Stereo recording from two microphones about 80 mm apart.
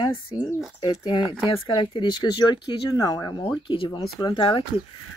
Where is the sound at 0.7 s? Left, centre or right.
Left.